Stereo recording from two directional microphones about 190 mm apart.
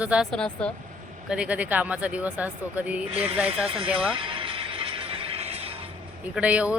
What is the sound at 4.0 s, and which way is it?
Music, 25° right (ahead or behind).